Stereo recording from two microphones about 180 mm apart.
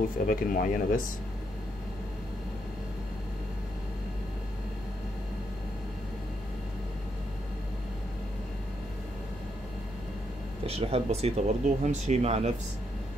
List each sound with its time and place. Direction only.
0.3 s speech: 50° left (ahead or behind)
10.6 s speech: 35° right (ahead or behind)